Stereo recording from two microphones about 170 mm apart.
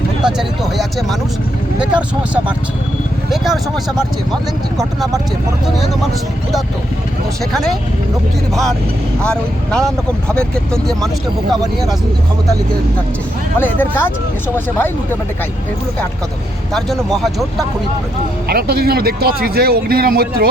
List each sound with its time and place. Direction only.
0.2 s speech: 5° right (ahead or behind)
7.5 s speech: centre (ahead or behind)
9.2 s speech: 5° left (ahead or behind)
13.6 s speech: 10° left (ahead or behind)
16.7 s speech: centre (ahead or behind)
18.4 s speech: 65° right (ahead or behind)